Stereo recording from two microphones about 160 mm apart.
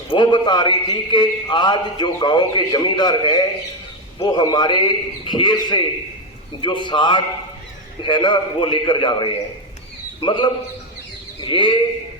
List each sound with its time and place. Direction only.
0.1 s a man's voice: 30° left (ahead or behind)